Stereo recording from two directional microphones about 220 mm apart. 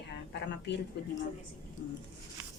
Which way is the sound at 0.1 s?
50° left (ahead or behind).